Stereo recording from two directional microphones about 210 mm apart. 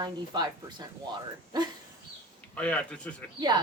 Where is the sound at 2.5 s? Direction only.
5° left (ahead or behind).